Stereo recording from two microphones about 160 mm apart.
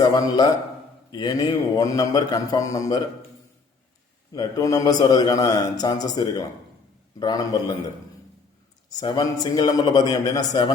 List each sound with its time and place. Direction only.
0.0 s a man's voice: 20° left (ahead or behind)
4.4 s a man's voice: 20° left (ahead or behind)
8.9 s a man's voice: 25° left (ahead or behind)